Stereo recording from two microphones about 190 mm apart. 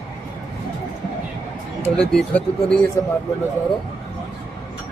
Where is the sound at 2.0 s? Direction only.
5° left (ahead or behind).